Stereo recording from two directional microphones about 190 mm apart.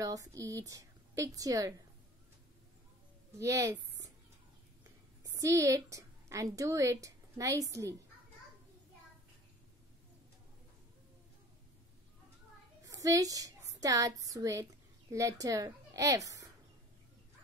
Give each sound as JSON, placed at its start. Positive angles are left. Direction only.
{"t": 0.0, "sound": "a woman's voice", "side_deg": -20}
{"t": 3.3, "sound": "a woman's voice", "side_deg": -15}
{"t": 5.2, "sound": "a woman's voice", "side_deg": -15}
{"t": 12.8, "sound": "a sound", "side_deg": -20}
{"t": 13.7, "sound": "a woman's voice", "side_deg": -20}